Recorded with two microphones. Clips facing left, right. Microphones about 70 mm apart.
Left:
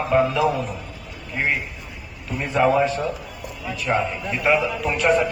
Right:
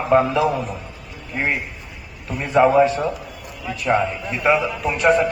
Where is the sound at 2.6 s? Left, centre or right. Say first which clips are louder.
Right 4 dB; centre.